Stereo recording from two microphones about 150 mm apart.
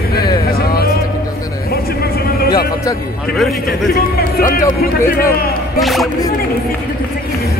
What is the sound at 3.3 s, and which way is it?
Speech, 90° left.